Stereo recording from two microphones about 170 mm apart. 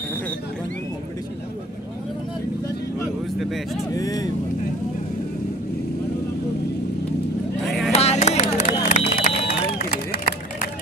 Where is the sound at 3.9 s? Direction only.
20° left (ahead or behind).